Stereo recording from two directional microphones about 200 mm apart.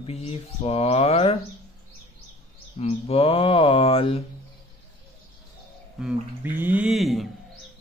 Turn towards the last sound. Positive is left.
turn(degrees=0)  # may be behind; listen again after turning